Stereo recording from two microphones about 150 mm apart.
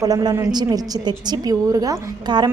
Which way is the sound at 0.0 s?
25° right (ahead or behind).